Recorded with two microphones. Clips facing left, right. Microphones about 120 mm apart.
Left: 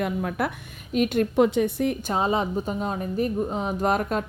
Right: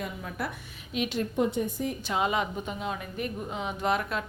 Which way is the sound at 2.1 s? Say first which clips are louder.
Even; 35° left (ahead or behind).